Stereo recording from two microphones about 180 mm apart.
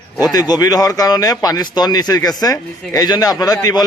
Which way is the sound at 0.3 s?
20° left (ahead or behind).